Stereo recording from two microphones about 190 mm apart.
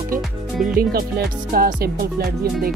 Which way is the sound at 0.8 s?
50° right (ahead or behind).